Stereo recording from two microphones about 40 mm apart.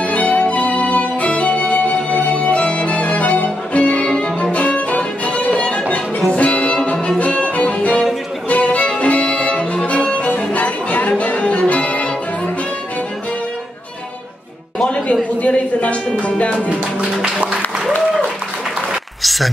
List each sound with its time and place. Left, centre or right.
0.0 s music: left
4.1 s violin: left
6.3 s music: left
7.2 s violin: left
14.8 s a sound: left
16.2 s music: left
17.2 s music: right
19.2 s a sound: centre